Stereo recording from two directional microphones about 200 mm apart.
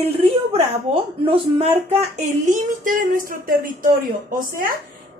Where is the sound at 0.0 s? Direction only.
30° right (ahead or behind).